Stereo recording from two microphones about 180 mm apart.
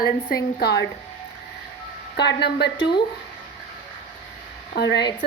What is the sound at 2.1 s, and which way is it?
Speech, 70° left (ahead or behind).